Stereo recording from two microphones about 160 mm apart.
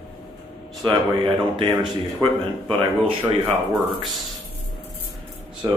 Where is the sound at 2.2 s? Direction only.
30° right (ahead or behind).